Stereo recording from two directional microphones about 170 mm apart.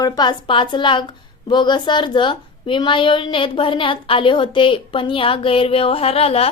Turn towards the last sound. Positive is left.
turn(degrees=35)  # may be behind; listen again after turning